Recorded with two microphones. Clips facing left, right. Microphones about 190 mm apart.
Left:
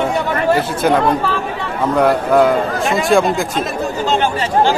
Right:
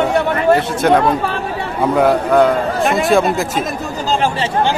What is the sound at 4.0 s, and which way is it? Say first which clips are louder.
Chatter: right 1 dB; 35° right (ahead or behind).